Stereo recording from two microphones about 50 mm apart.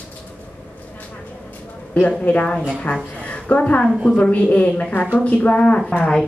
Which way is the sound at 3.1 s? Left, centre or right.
Left.